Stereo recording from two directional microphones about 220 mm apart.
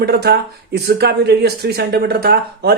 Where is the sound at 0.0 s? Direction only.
45° right (ahead or behind).